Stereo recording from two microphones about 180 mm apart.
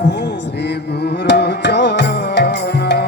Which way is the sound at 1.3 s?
70° left (ahead or behind).